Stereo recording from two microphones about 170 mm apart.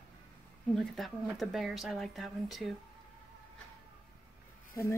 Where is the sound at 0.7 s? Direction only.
Centre (ahead or behind).